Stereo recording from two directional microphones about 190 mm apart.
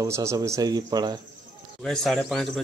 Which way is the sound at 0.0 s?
15° right (ahead or behind).